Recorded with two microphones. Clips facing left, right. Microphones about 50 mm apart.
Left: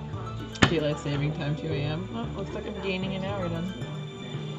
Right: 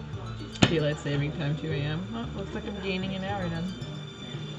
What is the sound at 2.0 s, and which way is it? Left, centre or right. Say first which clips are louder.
Speech: left 1 dB; left.